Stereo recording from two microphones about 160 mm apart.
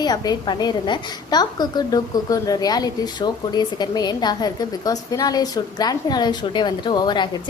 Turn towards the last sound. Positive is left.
turn(degrees=25)  # may be behind; listen again after turning